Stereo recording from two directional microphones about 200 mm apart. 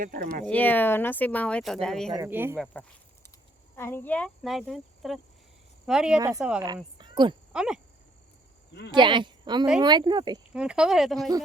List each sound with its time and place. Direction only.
0.0 s speech: 45° right (ahead or behind)
0.4 s speech: 10° left (ahead or behind)
2.1 s speech: 10° right (ahead or behind)
3.8 s speech: 10° left (ahead or behind)
6.1 s a woman's voice: 20° right (ahead or behind)
7.0 s insect: 20° right (ahead or behind)
7.5 s speech: 5° right (ahead or behind)
8.9 s a woman's voice: 25° right (ahead or behind)
10.5 s speech: 5° right (ahead or behind)